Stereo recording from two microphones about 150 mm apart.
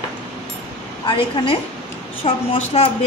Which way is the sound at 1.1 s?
35° left (ahead or behind).